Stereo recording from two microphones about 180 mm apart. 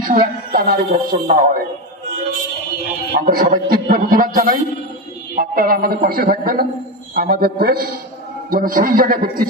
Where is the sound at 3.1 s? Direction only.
50° right (ahead or behind).